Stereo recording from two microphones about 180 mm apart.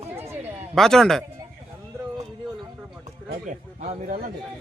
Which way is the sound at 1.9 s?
15° right (ahead or behind).